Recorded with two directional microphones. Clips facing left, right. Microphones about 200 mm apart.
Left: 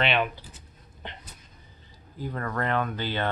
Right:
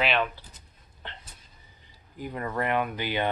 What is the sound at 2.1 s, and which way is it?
Speech, 15° right (ahead or behind).